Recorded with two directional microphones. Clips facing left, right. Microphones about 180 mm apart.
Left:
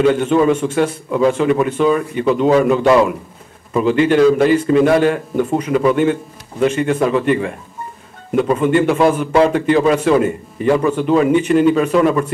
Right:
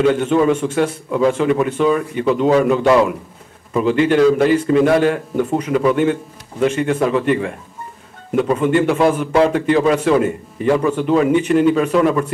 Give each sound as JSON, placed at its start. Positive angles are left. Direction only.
{"t": 0.0, "sound": "a man's voice", "side_deg": 15}